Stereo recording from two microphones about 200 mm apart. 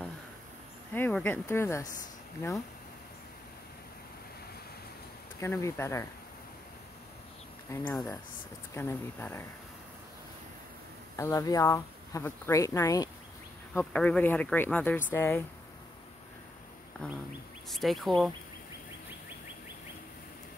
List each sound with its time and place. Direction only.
0.9 s speech: 10° left (ahead or behind)
5.4 s speech: 15° left (ahead or behind)
7.7 s speech: 10° left (ahead or behind)
11.1 s speech: 15° left (ahead or behind)
17.0 s duck: 5° left (ahead or behind)
17.6 s speech: centre (ahead or behind)